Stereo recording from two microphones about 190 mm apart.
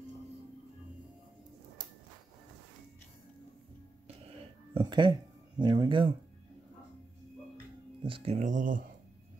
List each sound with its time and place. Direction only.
4.7 s a sound: 25° right (ahead or behind)
5.6 s speech: 25° right (ahead or behind)
8.0 s speech: 30° right (ahead or behind)